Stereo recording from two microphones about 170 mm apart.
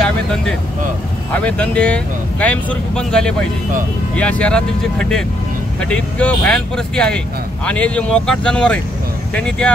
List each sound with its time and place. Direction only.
0.0 s vehicle: 5° left (ahead or behind)
1.3 s speech: 10° left (ahead or behind)